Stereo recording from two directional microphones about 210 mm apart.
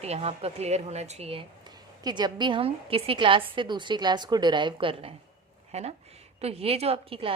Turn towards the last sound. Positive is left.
turn(degrees=-25)  # may be behind; listen again after turning